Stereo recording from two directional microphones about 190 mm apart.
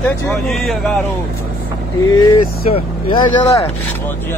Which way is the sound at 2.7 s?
20° left (ahead or behind).